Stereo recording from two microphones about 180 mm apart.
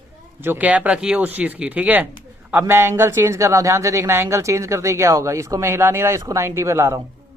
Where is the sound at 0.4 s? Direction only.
10° right (ahead or behind).